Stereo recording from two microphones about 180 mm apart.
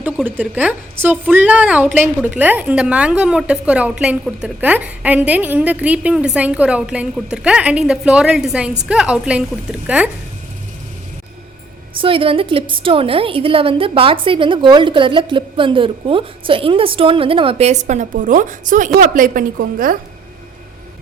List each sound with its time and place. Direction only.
0.3 s a woman's voice: 10° right (ahead or behind)
11.9 s a woman's voice: 30° right (ahead or behind); by 20.0 s 50° right (ahead or behind)